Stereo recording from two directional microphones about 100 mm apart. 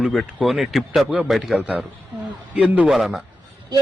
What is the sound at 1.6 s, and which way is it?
A man's voice, 15° right (ahead or behind).